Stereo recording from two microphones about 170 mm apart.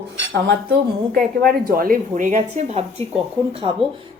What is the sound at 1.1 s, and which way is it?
A woman's voice, 60° right (ahead or behind).